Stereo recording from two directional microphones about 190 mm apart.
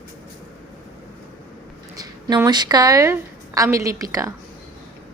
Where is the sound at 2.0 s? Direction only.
20° right (ahead or behind).